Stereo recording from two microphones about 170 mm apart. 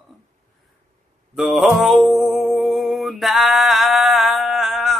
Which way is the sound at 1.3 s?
Centre (ahead or behind).